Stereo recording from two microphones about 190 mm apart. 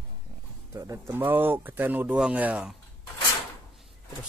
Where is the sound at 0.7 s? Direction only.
15° right (ahead or behind).